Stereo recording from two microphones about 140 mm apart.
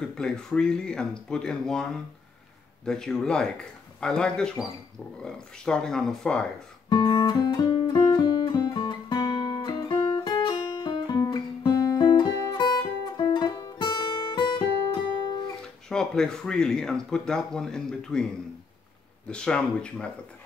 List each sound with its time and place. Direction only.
0.1 s speech: 5° left (ahead or behind)
6.9 s guitar: 35° left (ahead or behind)
15.9 s speech: 5° left (ahead or behind)
19.2 s speech: 5° left (ahead or behind)